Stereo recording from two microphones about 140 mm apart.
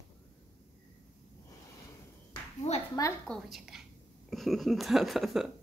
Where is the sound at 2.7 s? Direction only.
55° left (ahead or behind).